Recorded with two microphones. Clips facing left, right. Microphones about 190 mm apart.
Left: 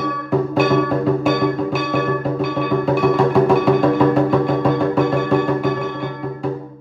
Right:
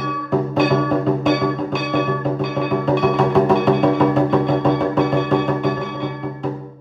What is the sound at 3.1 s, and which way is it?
Music, centre (ahead or behind).